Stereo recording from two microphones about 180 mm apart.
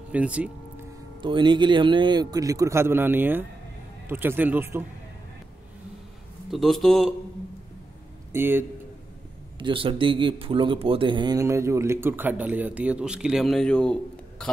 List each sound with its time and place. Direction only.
0.1 s speech: 5° right (ahead or behind)
1.2 s speech: 25° right (ahead or behind)
6.5 s speech: centre (ahead or behind)
8.3 s speech: 10° right (ahead or behind)
9.6 s speech: 30° right (ahead or behind); by 13.9 s 5° left (ahead or behind)